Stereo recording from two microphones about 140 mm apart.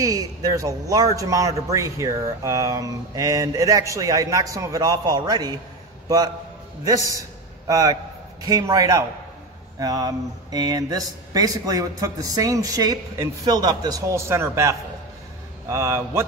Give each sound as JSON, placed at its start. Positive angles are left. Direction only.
{"t": 0.0, "sound": "a man's voice", "side_deg": -25}